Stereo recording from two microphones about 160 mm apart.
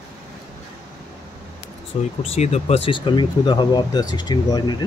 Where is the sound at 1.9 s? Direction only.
40° left (ahead or behind).